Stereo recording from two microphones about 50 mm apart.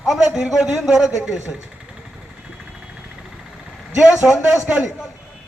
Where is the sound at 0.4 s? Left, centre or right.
Centre.